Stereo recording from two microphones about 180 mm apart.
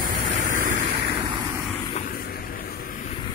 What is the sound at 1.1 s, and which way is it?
Vehicle, 25° right (ahead or behind).